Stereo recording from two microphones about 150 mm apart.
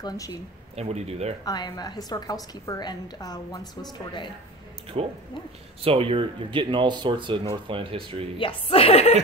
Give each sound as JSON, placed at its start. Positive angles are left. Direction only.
{"t": 0.0, "sound": "a woman's voice", "side_deg": 25}
{"t": 0.7, "sound": "speech", "side_deg": -45}
{"t": 1.4, "sound": "a woman's voice", "side_deg": 25}
{"t": 4.9, "sound": "speech", "side_deg": -40}
{"t": 8.4, "sound": "speech", "side_deg": 35}